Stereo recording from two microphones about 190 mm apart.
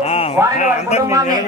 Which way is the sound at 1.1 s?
15° right (ahead or behind).